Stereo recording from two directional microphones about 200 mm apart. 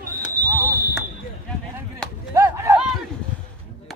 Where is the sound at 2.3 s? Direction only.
15° right (ahead or behind).